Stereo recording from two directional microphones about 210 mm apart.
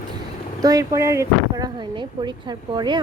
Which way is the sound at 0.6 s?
15° right (ahead or behind).